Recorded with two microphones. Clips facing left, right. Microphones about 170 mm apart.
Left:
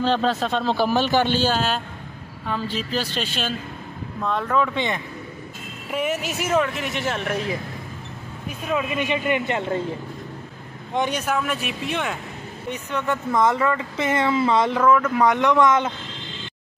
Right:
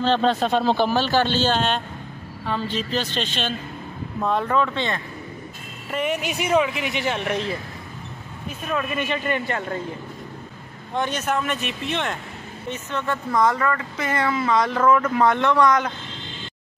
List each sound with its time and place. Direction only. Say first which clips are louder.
0.0 s speech: right 1 dB; 5° left (ahead or behind)
0.8 s speech: left 1 dB; 15° left (ahead or behind)
4.2 s speech: right 1 dB; 5° right (ahead or behind)
4.7 s speech: left 1 dB; 15° left (ahead or behind)
5.9 s speech: even; 5° left (ahead or behind)
8.7 s speech: left 2 dB; 15° left (ahead or behind)
10.9 s speech: left 1 dB; 15° left (ahead or behind)
14.8 s speech: even; 5° right (ahead or behind)
15.1 s speech: left 1 dB; 15° left (ahead or behind)